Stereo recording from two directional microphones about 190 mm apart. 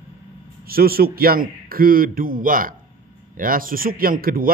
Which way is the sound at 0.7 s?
50° right (ahead or behind).